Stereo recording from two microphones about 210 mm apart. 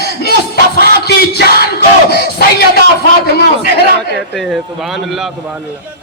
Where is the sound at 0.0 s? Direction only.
50° left (ahead or behind).